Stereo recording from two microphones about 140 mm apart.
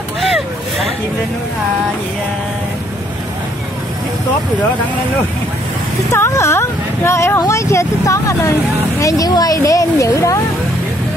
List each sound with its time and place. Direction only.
0.2 s vehicle: centre (ahead or behind)
6.1 s speech: 20° left (ahead or behind)